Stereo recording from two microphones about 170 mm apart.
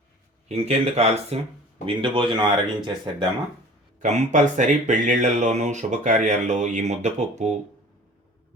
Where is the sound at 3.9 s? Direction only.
45° right (ahead or behind).